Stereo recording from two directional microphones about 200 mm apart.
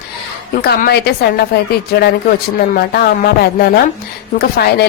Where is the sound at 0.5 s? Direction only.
45° left (ahead or behind).